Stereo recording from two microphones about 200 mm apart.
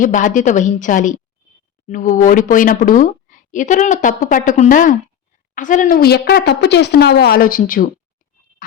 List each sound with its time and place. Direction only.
0.0 s a woman's voice: 40° left (ahead or behind)